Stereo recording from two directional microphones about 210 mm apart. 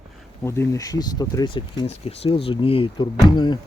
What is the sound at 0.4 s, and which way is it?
Speech, 15° left (ahead or behind).